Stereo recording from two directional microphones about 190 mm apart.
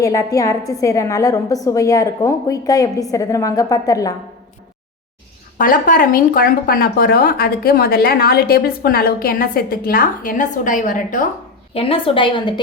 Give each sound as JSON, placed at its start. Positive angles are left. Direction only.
{"t": 0.0, "sound": "a woman's voice", "side_deg": 15}
{"t": 5.5, "sound": "speech", "side_deg": 45}
{"t": 11.7, "sound": "a woman's voice", "side_deg": 30}